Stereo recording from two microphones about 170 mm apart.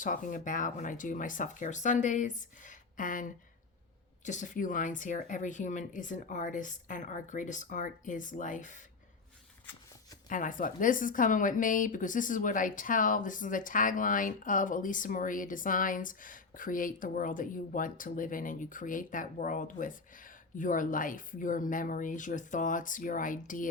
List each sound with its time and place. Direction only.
0.0 s a woman's voice: 50° left (ahead or behind)
10.2 s a woman's voice: 50° left (ahead or behind)